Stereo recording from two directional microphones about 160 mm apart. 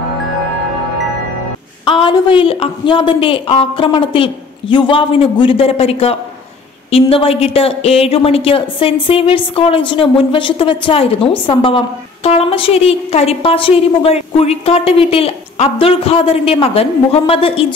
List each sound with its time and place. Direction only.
1.9 s a woman's voice: 30° left (ahead or behind)